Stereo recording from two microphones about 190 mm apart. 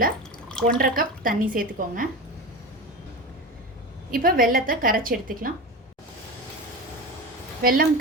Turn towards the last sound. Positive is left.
turn(degrees=-50)  # may be behind; listen again after turning